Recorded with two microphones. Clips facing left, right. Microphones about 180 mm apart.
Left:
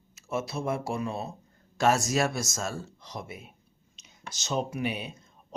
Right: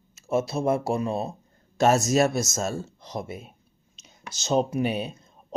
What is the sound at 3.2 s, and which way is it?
Speech, 40° right (ahead or behind).